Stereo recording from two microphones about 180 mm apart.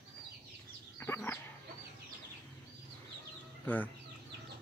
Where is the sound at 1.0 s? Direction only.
10° left (ahead or behind).